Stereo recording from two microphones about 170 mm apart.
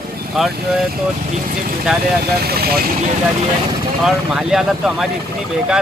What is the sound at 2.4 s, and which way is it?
Speech, 65° right (ahead or behind).